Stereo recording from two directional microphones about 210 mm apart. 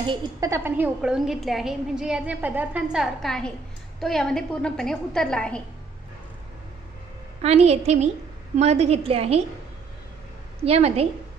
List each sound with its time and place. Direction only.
0.0 s a woman's voice: 25° right (ahead or behind)
0.5 s a woman's voice: 10° right (ahead or behind)
7.4 s a woman's voice: 30° right (ahead or behind)
10.6 s a woman's voice: 30° right (ahead or behind)